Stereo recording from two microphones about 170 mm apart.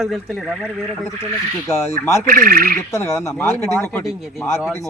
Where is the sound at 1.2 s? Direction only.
15° left (ahead or behind).